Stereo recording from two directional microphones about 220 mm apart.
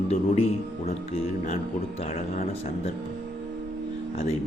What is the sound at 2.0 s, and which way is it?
Speech, 25° left (ahead or behind).